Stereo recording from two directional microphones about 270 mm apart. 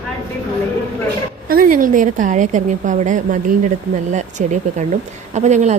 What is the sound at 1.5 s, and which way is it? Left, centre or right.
A woman's voice, right.